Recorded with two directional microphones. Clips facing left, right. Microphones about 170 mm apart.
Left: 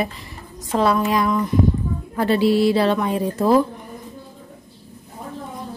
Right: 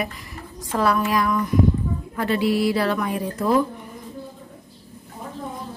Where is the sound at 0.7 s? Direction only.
25° left (ahead or behind).